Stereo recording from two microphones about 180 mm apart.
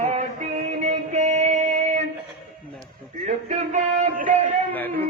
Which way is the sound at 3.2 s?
40° right (ahead or behind).